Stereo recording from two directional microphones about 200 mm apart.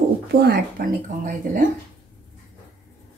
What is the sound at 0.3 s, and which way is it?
Speech, 50° right (ahead or behind).